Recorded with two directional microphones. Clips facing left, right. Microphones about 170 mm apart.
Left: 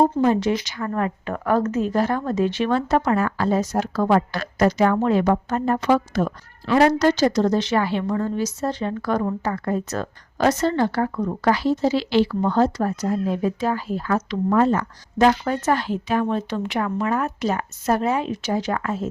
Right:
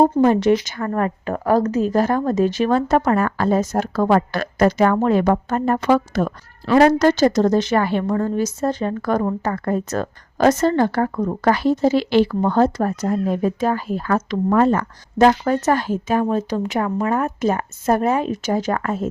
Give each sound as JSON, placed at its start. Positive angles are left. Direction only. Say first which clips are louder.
{"t": 0.2, "sound": "a woman's voice", "louder": "right 4 dB", "side_deg": -55}
{"t": 15.3, "sound": "a woman's voice", "louder": "right 3 dB", "side_deg": -40}